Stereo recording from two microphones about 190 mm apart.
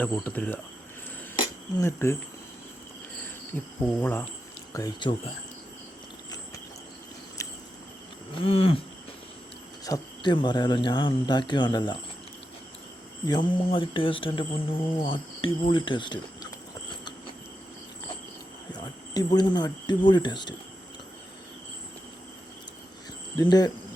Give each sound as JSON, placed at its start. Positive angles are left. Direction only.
{"t": 0.0, "sound": "speech", "side_deg": 10}
{"t": 1.4, "sound": "a sound", "side_deg": 15}
{"t": 4.0, "sound": "speech", "side_deg": 10}
{"t": 7.4, "sound": "cricket", "side_deg": 15}
{"t": 8.4, "sound": "speech", "side_deg": 30}
{"t": 9.8, "sound": "speech", "side_deg": 20}
{"t": 13.2, "sound": "speech", "side_deg": 25}
{"t": 18.7, "sound": "speech", "side_deg": 20}
{"t": 23.4, "sound": "speech", "side_deg": 20}